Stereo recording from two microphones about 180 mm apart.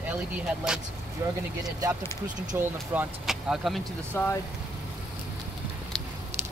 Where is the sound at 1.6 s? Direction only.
20° right (ahead or behind).